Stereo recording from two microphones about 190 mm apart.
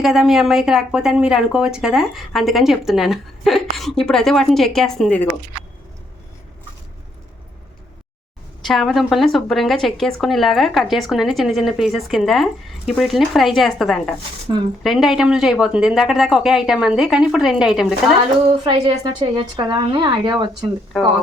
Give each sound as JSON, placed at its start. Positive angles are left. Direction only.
{"t": 0.0, "sound": "a woman's voice", "side_deg": 0}
{"t": 8.6, "sound": "a woman's voice", "side_deg": 0}
{"t": 18.6, "sound": "a woman's voice", "side_deg": -25}